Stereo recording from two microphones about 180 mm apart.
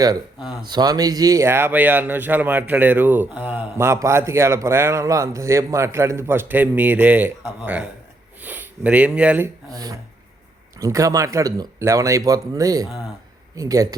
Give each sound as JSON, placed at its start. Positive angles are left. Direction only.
{"t": 0.6, "sound": "speech", "side_deg": -25}
{"t": 10.8, "sound": "speech", "side_deg": -20}